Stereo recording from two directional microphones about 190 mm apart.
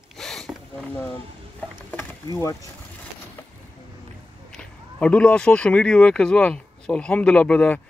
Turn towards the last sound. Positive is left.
turn(degrees=5)  # may be behind; listen again after turning